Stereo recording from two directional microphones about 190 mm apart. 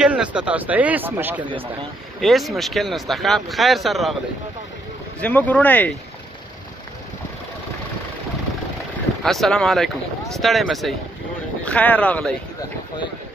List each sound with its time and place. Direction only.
0.0 s speech: 5° right (ahead or behind)
5.2 s speech: 10° left (ahead or behind)
9.2 s speech: centre (ahead or behind)